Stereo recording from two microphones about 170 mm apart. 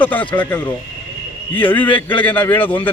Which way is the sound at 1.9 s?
30° left (ahead or behind).